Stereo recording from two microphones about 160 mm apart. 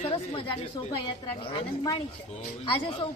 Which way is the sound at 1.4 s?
35° left (ahead or behind).